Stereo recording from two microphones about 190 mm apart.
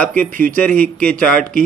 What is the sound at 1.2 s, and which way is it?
Speech, 5° left (ahead or behind).